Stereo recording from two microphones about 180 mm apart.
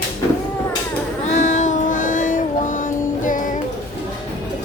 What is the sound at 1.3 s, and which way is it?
Child singing, 40° left (ahead or behind).